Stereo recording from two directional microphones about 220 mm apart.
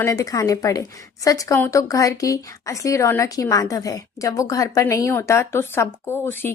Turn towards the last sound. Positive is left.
turn(degrees=10)  # may be behind; listen again after turning